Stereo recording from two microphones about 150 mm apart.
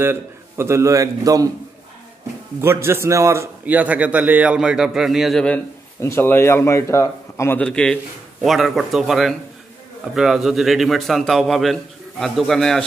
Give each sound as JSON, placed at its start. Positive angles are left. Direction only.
{"t": 0.0, "sound": "a man's voice", "side_deg": -15}
{"t": 2.6, "sound": "a man's voice", "side_deg": -15}
{"t": 5.9, "sound": "a man's voice", "side_deg": 15}